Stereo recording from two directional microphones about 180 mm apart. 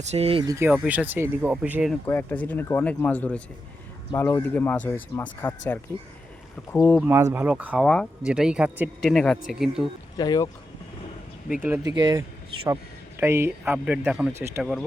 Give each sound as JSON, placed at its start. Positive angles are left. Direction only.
{"t": 0.0, "sound": "speech", "side_deg": -35}
{"t": 0.4, "sound": "speech", "side_deg": -15}
{"t": 2.0, "sound": "speech", "side_deg": 10}
{"t": 7.1, "sound": "speech", "side_deg": -15}
{"t": 7.4, "sound": "speech", "side_deg": -5}
{"t": 10.2, "sound": "speech", "side_deg": 20}
{"t": 11.6, "sound": "speech", "side_deg": -15}
{"t": 13.1, "sound": "speech", "side_deg": -15}
{"t": 14.6, "sound": "speech", "side_deg": 0}